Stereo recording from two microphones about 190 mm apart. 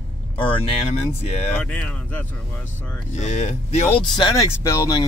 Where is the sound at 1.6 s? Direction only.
5° left (ahead or behind).